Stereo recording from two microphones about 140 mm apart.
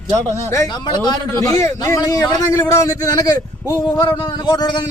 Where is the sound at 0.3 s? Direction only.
20° left (ahead or behind).